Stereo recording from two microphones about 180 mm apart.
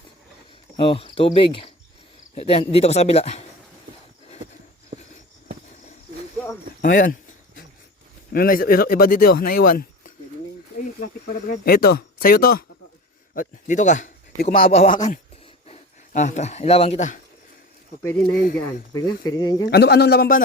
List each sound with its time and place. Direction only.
0.8 s cricket: 30° left (ahead or behind)
2.3 s speech: 35° left (ahead or behind)
6.8 s speech: 50° left (ahead or behind)
8.3 s a man's voice: 55° left (ahead or behind)
14.6 s speech: 35° left (ahead or behind)
18.3 s speech: 50° left (ahead or behind)
18.9 s cricket: 20° left (ahead or behind)
19.6 s speech: 60° left (ahead or behind)